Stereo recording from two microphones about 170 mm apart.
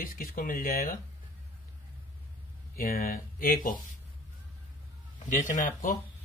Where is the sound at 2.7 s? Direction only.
60° left (ahead or behind).